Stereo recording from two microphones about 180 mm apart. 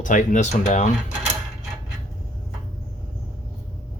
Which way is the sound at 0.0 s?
45° left (ahead or behind).